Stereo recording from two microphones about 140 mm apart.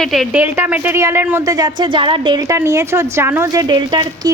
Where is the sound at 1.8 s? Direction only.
35° right (ahead or behind).